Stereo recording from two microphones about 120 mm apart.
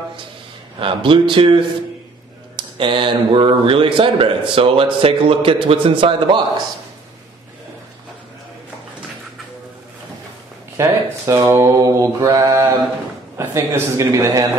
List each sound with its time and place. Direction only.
0.7 s speech: 45° right (ahead or behind)
10.8 s speech: 25° right (ahead or behind)